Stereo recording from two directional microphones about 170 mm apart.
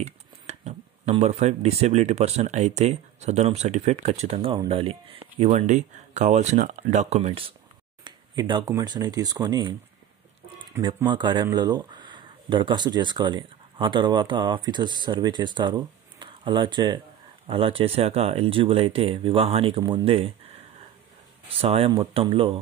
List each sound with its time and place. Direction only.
0.0 s speech: 40° right (ahead or behind)
5.4 s speech: 45° right (ahead or behind)
8.0 s speech: 25° right (ahead or behind)
11.1 s speech: 30° right (ahead or behind)
21.5 s speech: 35° right (ahead or behind)